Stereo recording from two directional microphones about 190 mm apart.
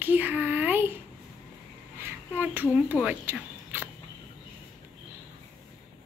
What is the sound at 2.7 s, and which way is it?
Speech, 5° right (ahead or behind).